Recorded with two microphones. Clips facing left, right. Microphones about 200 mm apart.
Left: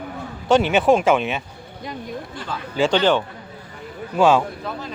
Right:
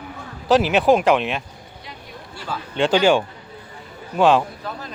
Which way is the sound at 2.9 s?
10° right (ahead or behind).